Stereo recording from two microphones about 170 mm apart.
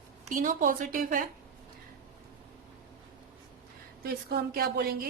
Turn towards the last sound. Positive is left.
turn(degrees=-60)  # may be behind; listen again after turning